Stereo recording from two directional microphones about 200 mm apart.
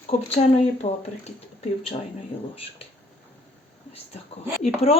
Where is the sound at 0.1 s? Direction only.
35° left (ahead or behind).